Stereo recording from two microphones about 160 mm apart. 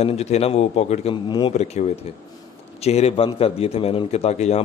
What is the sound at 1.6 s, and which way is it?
A man's voice, 45° left (ahead or behind).